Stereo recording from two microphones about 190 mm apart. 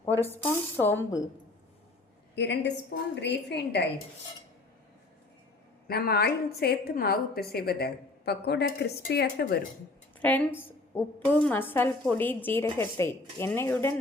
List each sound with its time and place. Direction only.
0.2 s a woman's voice: 10° left (ahead or behind)
2.3 s a woman's voice: 65° left (ahead or behind)
5.9 s a woman's voice: 55° left (ahead or behind)
10.2 s a woman's voice: 10° left (ahead or behind)